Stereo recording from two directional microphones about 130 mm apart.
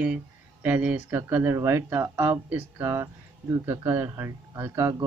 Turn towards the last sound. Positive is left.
turn(degrees=-25)  # may be behind; listen again after turning